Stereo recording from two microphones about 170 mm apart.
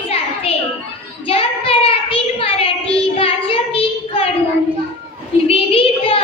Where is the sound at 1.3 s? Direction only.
35° left (ahead or behind).